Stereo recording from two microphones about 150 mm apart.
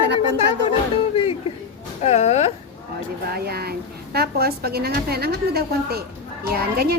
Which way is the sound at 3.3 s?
90° right.